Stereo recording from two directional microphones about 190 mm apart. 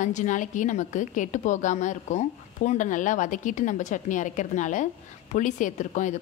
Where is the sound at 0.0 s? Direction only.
40° left (ahead or behind).